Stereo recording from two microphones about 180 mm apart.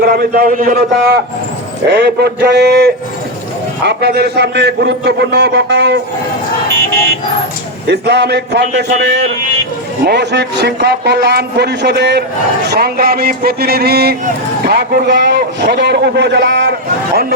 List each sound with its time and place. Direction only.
0.0 s a man's voice: 60° right (ahead or behind)
7.9 s a man's voice: 70° right (ahead or behind)